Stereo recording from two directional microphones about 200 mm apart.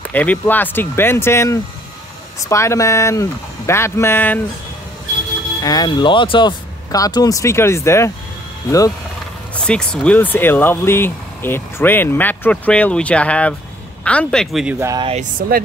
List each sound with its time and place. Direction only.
0.1 s speech: 10° left (ahead or behind)
5.6 s speech: 20° left (ahead or behind)
9.7 s speech: 5° left (ahead or behind)
15.0 s speech: 30° right (ahead or behind)